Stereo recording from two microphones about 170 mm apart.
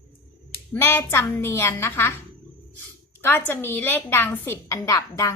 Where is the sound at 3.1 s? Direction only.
10° left (ahead or behind).